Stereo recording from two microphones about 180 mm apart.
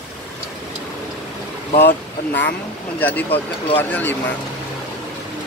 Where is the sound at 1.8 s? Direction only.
65° left (ahead or behind).